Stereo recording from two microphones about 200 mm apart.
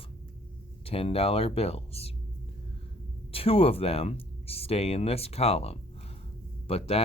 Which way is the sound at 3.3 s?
30° left (ahead or behind).